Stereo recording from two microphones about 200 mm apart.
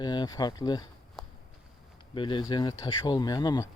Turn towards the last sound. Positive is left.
turn(degrees=20)  # may be behind; listen again after turning